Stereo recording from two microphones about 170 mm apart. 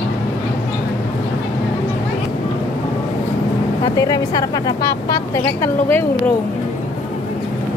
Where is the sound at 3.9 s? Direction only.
20° left (ahead or behind).